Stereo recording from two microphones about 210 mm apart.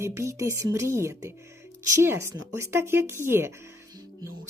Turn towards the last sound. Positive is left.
turn(degrees=-20)  # may be behind; listen again after turning